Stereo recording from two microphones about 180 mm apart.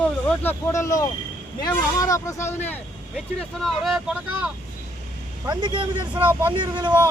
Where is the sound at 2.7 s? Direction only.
5° left (ahead or behind).